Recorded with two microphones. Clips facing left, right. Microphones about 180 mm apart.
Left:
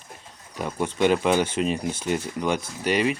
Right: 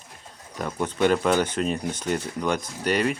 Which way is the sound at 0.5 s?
10° left (ahead or behind).